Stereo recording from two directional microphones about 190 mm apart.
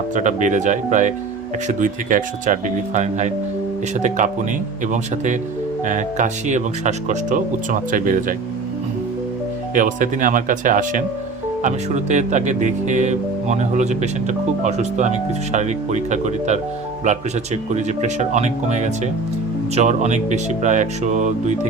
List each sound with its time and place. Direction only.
0.1 s speech: 40° right (ahead or behind)
4.9 s speech: 40° right (ahead or behind)
9.7 s speech: 45° right (ahead or behind)